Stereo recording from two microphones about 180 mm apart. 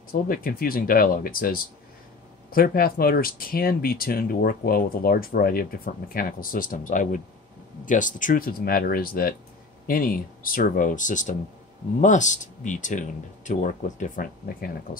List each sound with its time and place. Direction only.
0.1 s speech: 55° left (ahead or behind)